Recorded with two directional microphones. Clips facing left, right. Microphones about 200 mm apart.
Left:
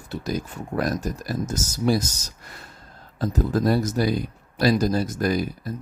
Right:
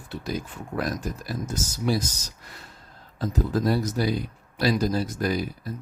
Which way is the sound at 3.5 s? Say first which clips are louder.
Left 3 dB; 50° left (ahead or behind).